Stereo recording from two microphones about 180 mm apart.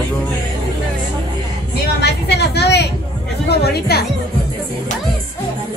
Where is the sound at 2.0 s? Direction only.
65° left (ahead or behind).